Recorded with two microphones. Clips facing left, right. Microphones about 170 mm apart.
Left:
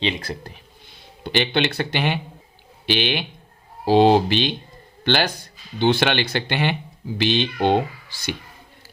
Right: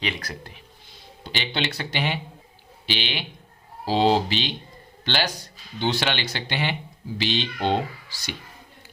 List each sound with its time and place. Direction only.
0.0 s speech: 25° left (ahead or behind)
1.2 s speech: 60° left (ahead or behind)